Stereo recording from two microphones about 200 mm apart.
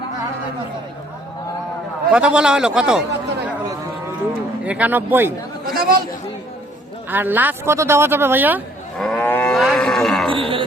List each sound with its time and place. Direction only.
2.0 s a man's voice: 5° right (ahead or behind)
4.6 s speech: 5° right (ahead or behind)
5.7 s chatter: 50° right (ahead or behind)
7.1 s speech: 10° right (ahead or behind)
9.0 s livestock: 5° left (ahead or behind)
10.2 s music: 25° right (ahead or behind)